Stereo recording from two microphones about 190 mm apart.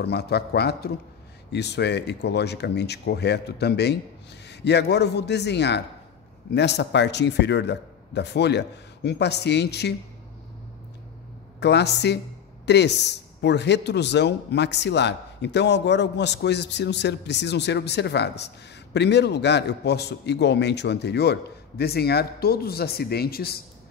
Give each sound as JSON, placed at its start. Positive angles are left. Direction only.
{"t": 0.0, "sound": "a man's voice", "side_deg": 60}
{"t": 11.6, "sound": "a man's voice", "side_deg": 60}